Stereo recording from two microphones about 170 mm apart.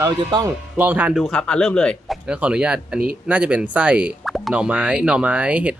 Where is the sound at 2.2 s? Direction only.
5° right (ahead or behind).